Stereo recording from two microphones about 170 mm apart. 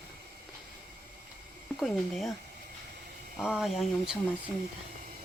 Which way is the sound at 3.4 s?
5° right (ahead or behind).